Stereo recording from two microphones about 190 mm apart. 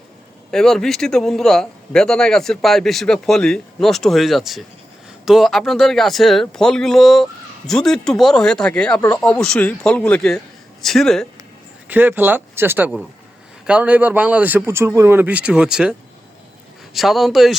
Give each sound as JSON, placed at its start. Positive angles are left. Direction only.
{"t": 0.5, "sound": "a man's voice", "side_deg": 0}
{"t": 11.9, "sound": "a man's voice", "side_deg": -10}